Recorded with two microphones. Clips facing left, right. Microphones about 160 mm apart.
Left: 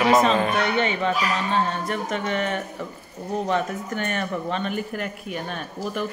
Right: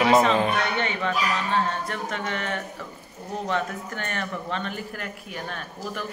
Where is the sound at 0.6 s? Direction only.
20° left (ahead or behind).